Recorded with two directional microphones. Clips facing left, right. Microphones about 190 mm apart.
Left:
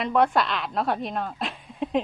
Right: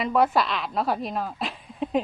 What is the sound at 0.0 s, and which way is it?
Speech, 5° right (ahead or behind).